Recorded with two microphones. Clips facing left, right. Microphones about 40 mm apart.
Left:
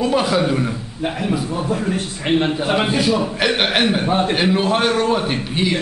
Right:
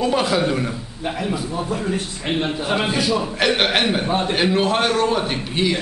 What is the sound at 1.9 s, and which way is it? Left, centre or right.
A man's voice, centre.